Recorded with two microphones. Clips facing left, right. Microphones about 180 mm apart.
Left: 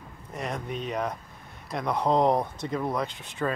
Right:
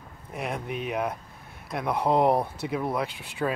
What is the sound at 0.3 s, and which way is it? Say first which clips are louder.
Speech: right 1 dB; 5° right (ahead or behind).